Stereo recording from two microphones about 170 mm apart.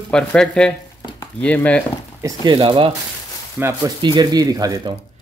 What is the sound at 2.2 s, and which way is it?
Speech, 20° right (ahead or behind).